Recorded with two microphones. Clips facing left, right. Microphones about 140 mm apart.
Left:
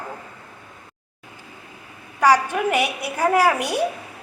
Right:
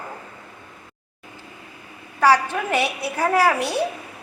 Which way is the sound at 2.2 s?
15° left (ahead or behind).